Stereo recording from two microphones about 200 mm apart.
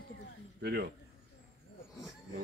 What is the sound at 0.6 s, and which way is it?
Speech, 55° right (ahead or behind).